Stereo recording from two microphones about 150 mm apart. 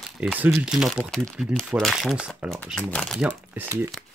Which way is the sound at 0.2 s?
5° right (ahead or behind).